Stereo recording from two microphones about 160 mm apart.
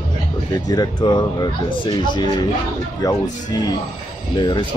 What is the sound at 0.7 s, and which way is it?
Speech, 25° left (ahead or behind).